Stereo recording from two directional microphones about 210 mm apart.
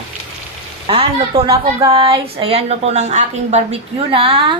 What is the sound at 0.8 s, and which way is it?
A woman's voice, 25° right (ahead or behind).